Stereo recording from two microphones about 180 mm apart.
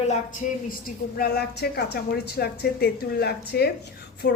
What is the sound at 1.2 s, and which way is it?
A woman's voice, 60° left (ahead or behind).